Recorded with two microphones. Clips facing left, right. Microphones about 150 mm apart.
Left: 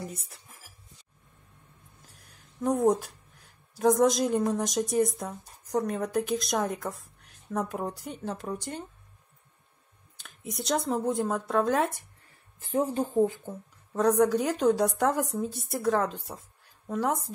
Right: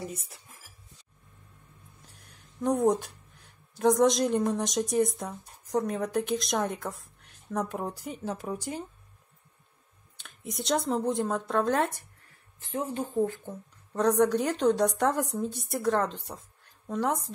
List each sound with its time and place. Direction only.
0.0 s a woman's voice: centre (ahead or behind)
2.0 s speech: centre (ahead or behind)
10.1 s a woman's voice: centre (ahead or behind)
12.7 s a woman's voice: 35° left (ahead or behind)
13.2 s speech: 15° left (ahead or behind)
13.9 s a woman's voice: centre (ahead or behind)